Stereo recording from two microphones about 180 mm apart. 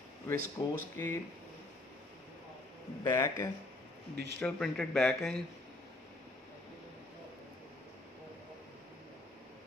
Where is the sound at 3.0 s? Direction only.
20° left (ahead or behind).